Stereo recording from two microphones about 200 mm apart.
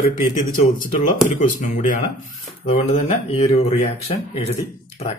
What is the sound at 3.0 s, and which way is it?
Speech, 30° left (ahead or behind).